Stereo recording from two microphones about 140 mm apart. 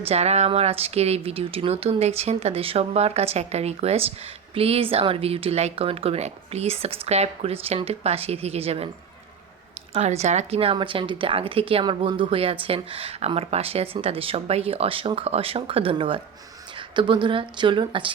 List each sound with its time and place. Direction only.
0.0 s speech: 45° right (ahead or behind)
9.9 s a woman's voice: 50° right (ahead or behind); by 18.1 s 35° right (ahead or behind)